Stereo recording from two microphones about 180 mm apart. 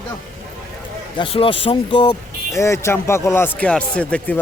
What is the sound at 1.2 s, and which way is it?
Speech, 30° left (ahead or behind).